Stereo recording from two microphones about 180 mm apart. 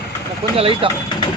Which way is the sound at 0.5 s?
30° right (ahead or behind).